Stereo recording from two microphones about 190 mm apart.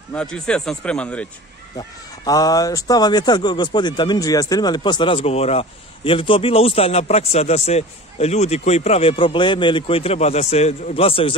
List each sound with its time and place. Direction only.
0.1 s a man's voice: 5° left (ahead or behind)
1.8 s speech: 20° left (ahead or behind)